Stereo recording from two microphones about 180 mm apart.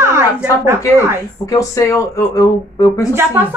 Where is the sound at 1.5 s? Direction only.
20° left (ahead or behind).